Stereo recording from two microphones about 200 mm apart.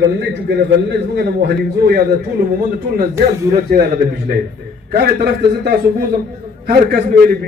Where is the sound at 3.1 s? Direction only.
15° right (ahead or behind).